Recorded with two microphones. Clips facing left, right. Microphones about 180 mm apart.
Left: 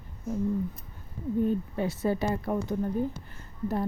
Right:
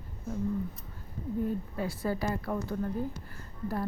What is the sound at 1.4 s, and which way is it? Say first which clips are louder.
Speech: left 5 dB; 25° left (ahead or behind).